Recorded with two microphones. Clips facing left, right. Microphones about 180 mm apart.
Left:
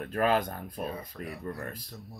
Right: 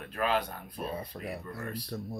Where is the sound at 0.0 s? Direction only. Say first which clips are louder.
Left 4 dB; 45° left (ahead or behind).